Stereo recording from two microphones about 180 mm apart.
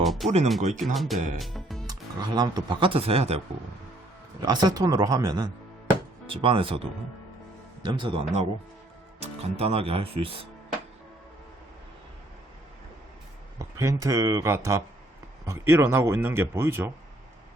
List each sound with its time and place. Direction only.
0.0 s music: centre (ahead or behind)
0.4 s speech: centre (ahead or behind)
1.4 s music: centre (ahead or behind)
1.9 s speech: 20° right (ahead or behind)
4.4 s speech: 25° right (ahead or behind)
7.9 s speech: 30° right (ahead or behind)
13.6 s speech: 15° right (ahead or behind)